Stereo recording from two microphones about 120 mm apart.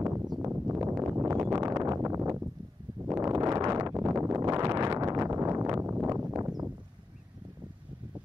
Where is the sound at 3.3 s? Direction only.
25° right (ahead or behind).